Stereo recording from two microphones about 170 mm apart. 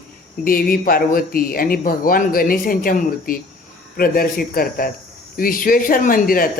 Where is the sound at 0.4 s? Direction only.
60° left (ahead or behind).